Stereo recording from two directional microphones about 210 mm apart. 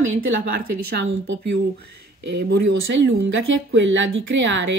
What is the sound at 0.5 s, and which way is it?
A woman's voice, 50° right (ahead or behind).